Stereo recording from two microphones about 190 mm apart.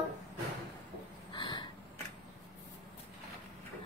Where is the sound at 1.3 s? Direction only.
25° left (ahead or behind).